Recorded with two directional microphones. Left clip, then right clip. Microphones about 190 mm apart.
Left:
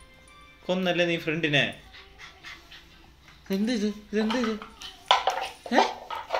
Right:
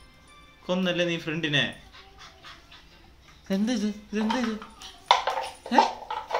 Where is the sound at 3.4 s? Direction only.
15° right (ahead or behind).